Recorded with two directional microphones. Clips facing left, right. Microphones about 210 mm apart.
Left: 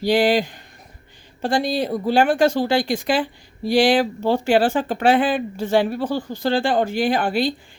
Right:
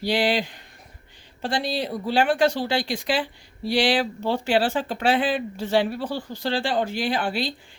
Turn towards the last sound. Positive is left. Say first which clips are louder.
# left 6 dB
turn(degrees=50)  # may be behind; listen again after turning